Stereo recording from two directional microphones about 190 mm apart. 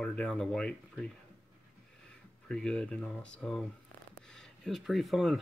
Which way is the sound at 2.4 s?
5° left (ahead or behind).